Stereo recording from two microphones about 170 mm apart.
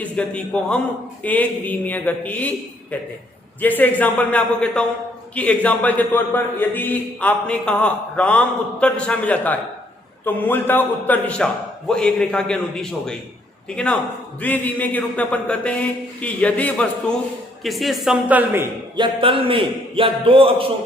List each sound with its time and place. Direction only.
0.0 s a man's voice: 5° left (ahead or behind); by 18.6 s 10° right (ahead or behind)
18.9 s a man's voice: 30° right (ahead or behind)